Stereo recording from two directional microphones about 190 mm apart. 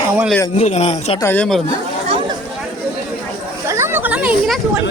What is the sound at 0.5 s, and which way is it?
Speech, 35° left (ahead or behind).